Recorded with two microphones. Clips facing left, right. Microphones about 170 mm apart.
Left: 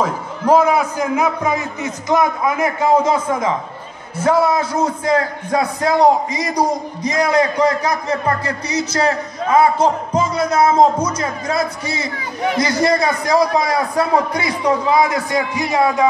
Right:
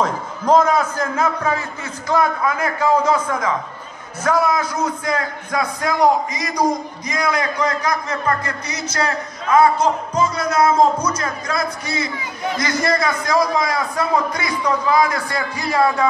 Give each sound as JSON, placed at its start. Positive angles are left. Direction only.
{"t": 0.0, "sound": "a man's voice", "side_deg": 10}